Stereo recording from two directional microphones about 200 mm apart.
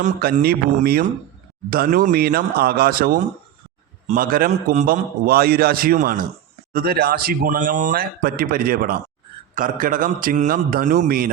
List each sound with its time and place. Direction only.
0.0 s speech: 45° right (ahead or behind)